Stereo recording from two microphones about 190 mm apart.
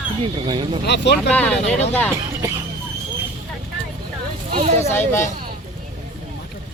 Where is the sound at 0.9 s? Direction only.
65° left (ahead or behind).